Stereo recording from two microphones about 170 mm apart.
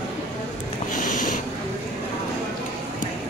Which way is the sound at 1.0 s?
50° left (ahead or behind).